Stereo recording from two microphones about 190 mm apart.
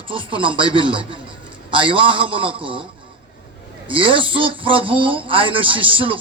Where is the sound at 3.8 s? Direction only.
25° right (ahead or behind).